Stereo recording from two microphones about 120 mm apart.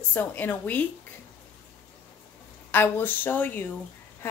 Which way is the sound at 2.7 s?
15° left (ahead or behind).